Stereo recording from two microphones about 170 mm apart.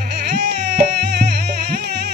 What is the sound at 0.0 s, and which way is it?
Music, 75° right (ahead or behind).